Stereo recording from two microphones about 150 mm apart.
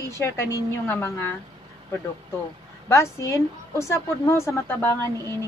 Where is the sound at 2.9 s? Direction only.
20° left (ahead or behind).